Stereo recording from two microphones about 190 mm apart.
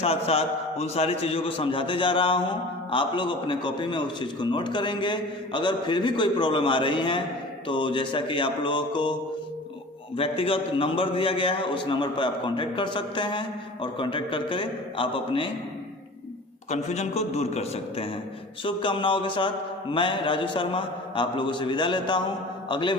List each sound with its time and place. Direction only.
0.0 s a man's voice: 30° left (ahead or behind)
10.2 s a man's voice: 30° left (ahead or behind)
16.6 s a man's voice: 35° left (ahead or behind)